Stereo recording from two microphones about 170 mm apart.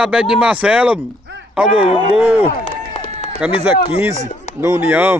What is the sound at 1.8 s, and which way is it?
Speech, 35° left (ahead or behind).